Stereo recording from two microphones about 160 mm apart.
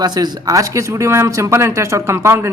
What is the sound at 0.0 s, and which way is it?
Speech, 25° right (ahead or behind).